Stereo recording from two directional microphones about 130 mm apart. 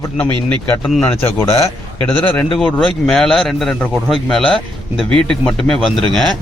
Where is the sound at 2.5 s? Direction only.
5° left (ahead or behind).